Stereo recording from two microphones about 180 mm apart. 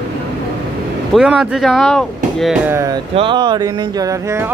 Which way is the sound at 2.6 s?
15° right (ahead or behind).